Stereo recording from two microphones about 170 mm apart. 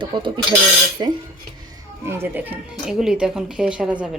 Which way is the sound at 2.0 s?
15° right (ahead or behind).